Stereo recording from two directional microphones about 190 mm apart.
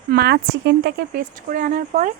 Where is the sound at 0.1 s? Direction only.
60° right (ahead or behind).